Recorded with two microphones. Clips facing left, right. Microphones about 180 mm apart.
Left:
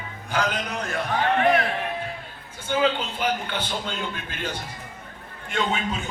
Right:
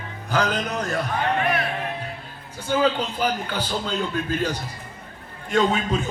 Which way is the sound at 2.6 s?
40° right (ahead or behind).